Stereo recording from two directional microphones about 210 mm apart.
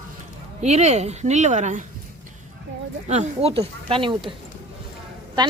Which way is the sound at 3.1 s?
30° right (ahead or behind).